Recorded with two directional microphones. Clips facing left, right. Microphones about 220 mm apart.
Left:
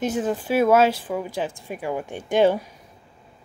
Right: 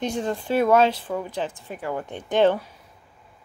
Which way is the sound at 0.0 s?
5° left (ahead or behind).